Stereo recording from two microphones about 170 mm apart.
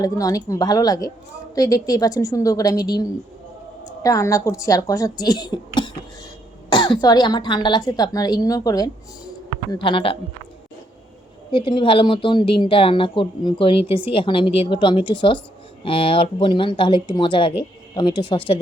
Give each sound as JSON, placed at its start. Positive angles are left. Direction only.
{"t": 0.0, "sound": "speech", "side_deg": 20}
{"t": 11.5, "sound": "speech", "side_deg": 30}